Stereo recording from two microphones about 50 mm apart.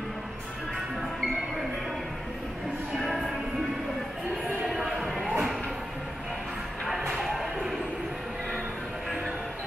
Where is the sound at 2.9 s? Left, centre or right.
Centre.